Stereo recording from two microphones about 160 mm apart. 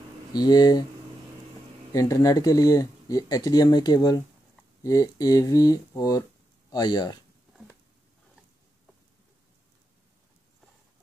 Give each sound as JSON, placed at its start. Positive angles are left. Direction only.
{"t": 0.3, "sound": "speech", "side_deg": 25}
{"t": 1.9, "sound": "speech", "side_deg": 20}